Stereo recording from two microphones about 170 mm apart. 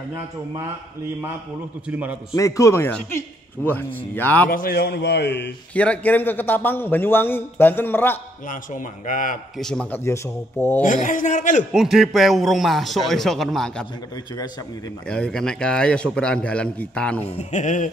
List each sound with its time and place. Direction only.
1.9 s a man's voice: 10° right (ahead or behind)
2.3 s a man's voice: 20° left (ahead or behind)
4.5 s a man's voice: 60° left (ahead or behind); by 5.5 s 85° left
5.8 s a man's voice: 10° left (ahead or behind)
8.5 s a man's voice: 50° left (ahead or behind)
9.6 s a man's voice: 5° left (ahead or behind)
10.8 s a man's voice: 50° left (ahead or behind)
11.7 s a man's voice: centre (ahead or behind)
15.0 s a man's voice: 5° left (ahead or behind)
17.3 s a man's voice: 40° left (ahead or behind)